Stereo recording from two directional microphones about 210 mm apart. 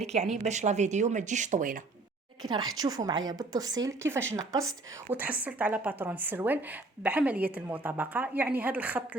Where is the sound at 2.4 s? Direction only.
20° right (ahead or behind).